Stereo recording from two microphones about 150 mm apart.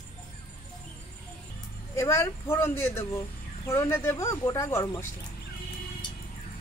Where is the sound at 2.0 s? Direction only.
20° left (ahead or behind).